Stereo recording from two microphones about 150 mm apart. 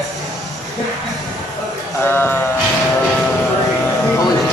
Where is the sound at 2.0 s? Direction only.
15° left (ahead or behind).